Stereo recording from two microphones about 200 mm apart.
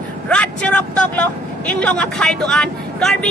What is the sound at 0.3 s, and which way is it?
Speech, 5° left (ahead or behind).